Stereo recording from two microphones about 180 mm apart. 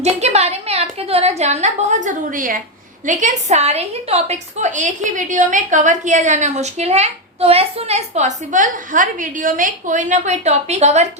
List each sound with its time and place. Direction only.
0.0 s a woman's voice: 35° right (ahead or behind)